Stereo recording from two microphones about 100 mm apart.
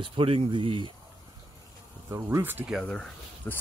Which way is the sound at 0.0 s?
65° right (ahead or behind).